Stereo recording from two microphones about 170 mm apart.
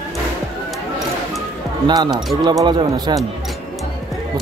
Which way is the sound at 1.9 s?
25° right (ahead or behind).